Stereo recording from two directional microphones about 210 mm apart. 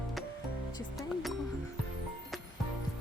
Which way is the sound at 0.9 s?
Centre (ahead or behind).